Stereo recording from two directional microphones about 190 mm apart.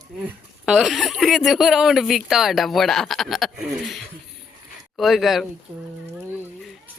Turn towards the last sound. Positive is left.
turn(degrees=-10)  # may be behind; listen again after turning